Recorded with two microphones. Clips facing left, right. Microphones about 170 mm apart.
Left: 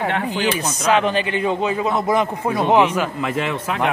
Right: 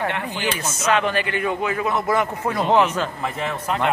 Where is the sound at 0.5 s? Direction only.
15° left (ahead or behind).